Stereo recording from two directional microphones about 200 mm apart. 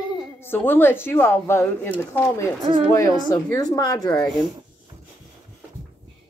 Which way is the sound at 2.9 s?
15° left (ahead or behind).